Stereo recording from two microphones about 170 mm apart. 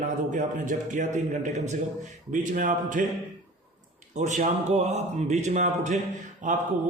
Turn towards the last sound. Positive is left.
turn(degrees=-50)  # may be behind; listen again after turning